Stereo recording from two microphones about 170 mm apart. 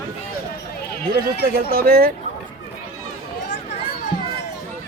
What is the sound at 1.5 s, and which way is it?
Speech, 65° right (ahead or behind).